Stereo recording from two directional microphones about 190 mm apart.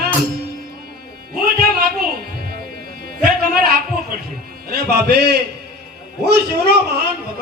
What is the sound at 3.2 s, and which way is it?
Music, 50° right (ahead or behind).